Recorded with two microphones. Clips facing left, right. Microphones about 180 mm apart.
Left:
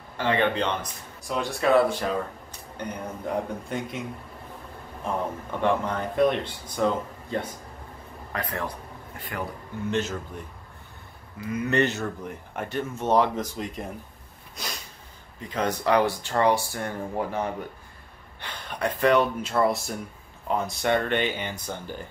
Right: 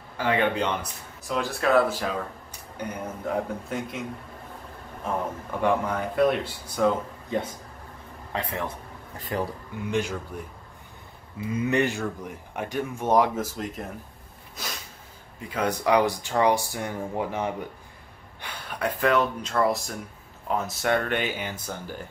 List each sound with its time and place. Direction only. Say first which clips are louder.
0.2 s speech: even; 10° right (ahead or behind)
5.6 s speech: right 1 dB; 10° right (ahead or behind)
8.3 s a man's voice: right 1 dB; 25° right (ahead or behind)
9.8 s speech: even; 10° right (ahead or behind)
11.5 s speech: even; 15° right (ahead or behind)
15.4 s speech: even; 10° right (ahead or behind)